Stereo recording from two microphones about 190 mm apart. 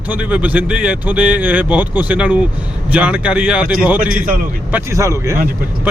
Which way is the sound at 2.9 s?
5° right (ahead or behind).